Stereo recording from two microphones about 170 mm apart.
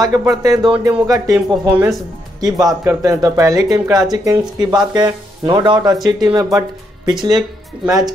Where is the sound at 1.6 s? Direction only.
10° right (ahead or behind).